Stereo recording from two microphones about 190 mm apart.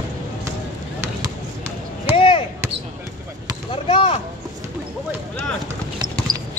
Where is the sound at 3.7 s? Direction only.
30° left (ahead or behind).